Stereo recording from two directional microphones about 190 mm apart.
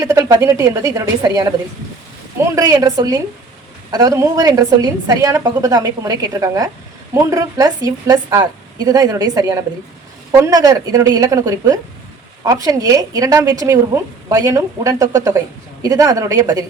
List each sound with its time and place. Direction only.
0.0 s a woman's voice: 15° right (ahead or behind)